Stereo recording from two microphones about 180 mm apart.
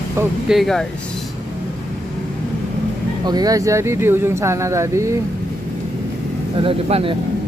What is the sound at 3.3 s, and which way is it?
Speech, 20° right (ahead or behind).